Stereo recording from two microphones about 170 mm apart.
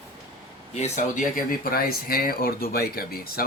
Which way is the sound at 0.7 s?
40° left (ahead or behind).